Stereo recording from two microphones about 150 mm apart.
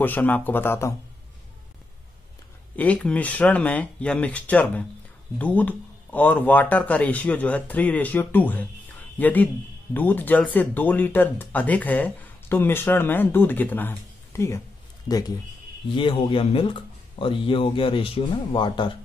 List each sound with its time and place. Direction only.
0.0 s speech: 10° left (ahead or behind)
2.7 s a man's voice: 10° left (ahead or behind); by 18.9 s 30° left (ahead or behind)